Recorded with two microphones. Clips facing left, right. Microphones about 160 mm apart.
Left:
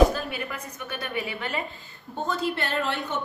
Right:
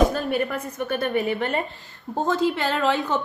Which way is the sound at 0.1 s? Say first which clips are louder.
Right 7 dB; 50° right (ahead or behind).